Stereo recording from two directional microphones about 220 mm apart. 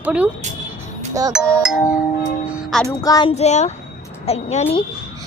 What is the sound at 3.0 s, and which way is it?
Child singing, 20° left (ahead or behind).